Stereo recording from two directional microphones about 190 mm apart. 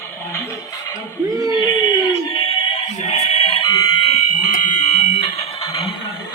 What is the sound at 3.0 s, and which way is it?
Fire alarm, 30° left (ahead or behind).